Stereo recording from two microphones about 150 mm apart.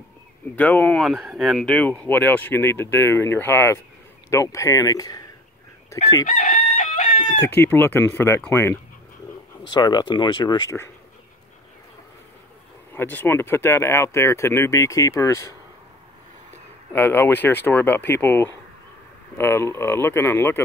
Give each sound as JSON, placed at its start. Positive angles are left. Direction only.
{"t": 0.6, "sound": "speech", "side_deg": 10}
{"t": 1.0, "sound": "speech", "side_deg": -5}
{"t": 6.2, "sound": "chicken", "side_deg": 55}
{"t": 7.4, "sound": "speech", "side_deg": 15}
{"t": 9.6, "sound": "speech", "side_deg": 30}
{"t": 12.9, "sound": "speech", "side_deg": 15}
{"t": 16.9, "sound": "speech", "side_deg": 15}